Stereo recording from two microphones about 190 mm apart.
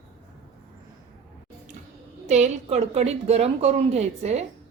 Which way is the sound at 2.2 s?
35° right (ahead or behind).